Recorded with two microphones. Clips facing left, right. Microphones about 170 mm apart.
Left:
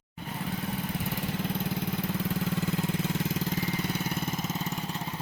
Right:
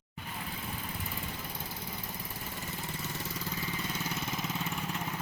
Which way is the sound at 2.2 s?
80° left.